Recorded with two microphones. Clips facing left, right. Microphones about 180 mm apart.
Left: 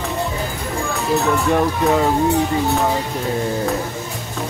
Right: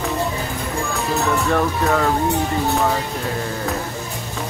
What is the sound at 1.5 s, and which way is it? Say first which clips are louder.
Speech: left 3 dB; 15° left (ahead or behind).